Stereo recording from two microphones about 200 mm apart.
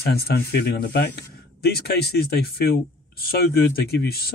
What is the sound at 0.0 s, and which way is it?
Speech, 50° left (ahead or behind).